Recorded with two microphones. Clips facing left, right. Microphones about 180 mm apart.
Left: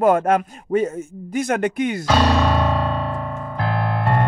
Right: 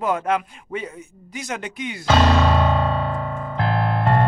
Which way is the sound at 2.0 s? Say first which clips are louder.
Right 2 dB; 25° right (ahead or behind).